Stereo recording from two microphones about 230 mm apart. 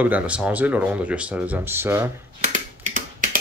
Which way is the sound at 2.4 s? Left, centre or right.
Right.